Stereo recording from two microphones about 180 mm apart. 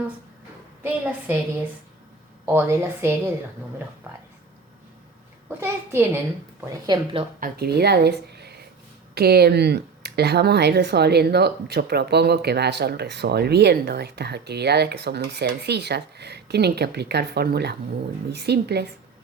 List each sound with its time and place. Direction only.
0.8 s a woman's voice: 10° right (ahead or behind)
2.5 s a woman's voice: 15° right (ahead or behind)
5.5 s a woman's voice: 15° right (ahead or behind)
7.3 s speech: 55° right (ahead or behind)